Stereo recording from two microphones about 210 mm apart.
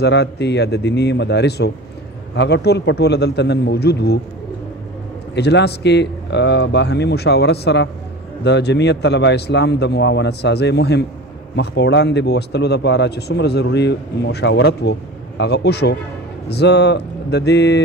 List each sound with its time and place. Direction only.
0.0 s speech: 55° left (ahead or behind)
5.3 s speech: 55° left (ahead or behind)